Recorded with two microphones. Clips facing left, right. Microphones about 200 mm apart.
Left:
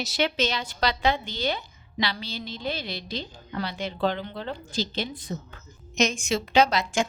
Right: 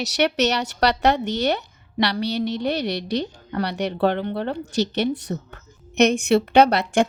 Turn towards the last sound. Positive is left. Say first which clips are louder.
# right 6 dB
turn(degrees=-60)  # may be behind; listen again after turning